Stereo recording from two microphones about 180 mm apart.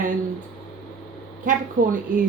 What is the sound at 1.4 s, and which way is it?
Speech, 50° right (ahead or behind).